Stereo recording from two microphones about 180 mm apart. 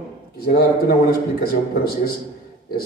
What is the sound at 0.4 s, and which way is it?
Speech, 60° left (ahead or behind).